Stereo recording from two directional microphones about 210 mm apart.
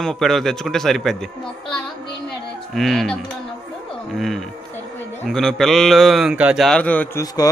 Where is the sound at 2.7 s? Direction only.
Centre (ahead or behind).